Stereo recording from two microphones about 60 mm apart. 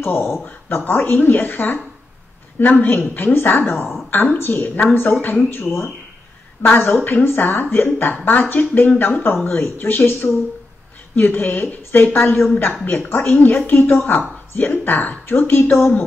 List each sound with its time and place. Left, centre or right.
0.0 s speech: left